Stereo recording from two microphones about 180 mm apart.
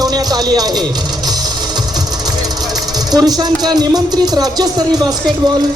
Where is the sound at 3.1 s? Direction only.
20° right (ahead or behind).